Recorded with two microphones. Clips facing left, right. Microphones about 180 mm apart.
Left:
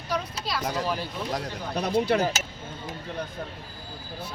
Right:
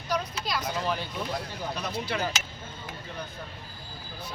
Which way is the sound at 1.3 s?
60° left (ahead or behind).